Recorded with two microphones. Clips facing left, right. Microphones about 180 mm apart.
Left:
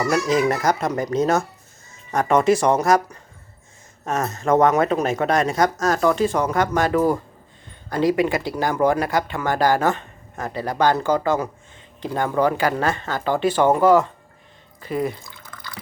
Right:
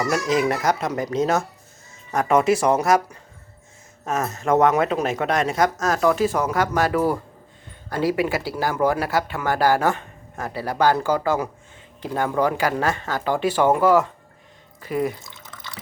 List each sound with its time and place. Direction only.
0.1 s speech: centre (ahead or behind)
4.0 s speech: 5° right (ahead or behind)
15.2 s drip: 20° right (ahead or behind)